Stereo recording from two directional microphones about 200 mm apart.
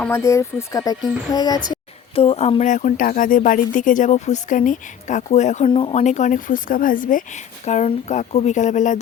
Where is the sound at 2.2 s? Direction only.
30° left (ahead or behind).